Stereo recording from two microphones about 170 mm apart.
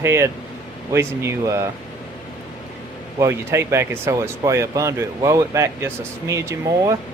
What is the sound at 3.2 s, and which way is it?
Speech, 15° right (ahead or behind).